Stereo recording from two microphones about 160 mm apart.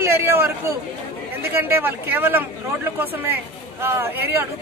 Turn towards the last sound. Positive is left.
turn(degrees=-15)  # may be behind; listen again after turning